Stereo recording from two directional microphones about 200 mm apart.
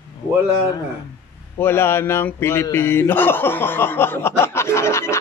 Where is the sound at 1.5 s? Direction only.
10° left (ahead or behind).